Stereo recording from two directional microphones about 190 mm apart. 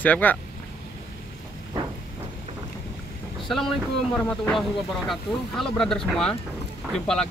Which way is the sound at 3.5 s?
Centre (ahead or behind).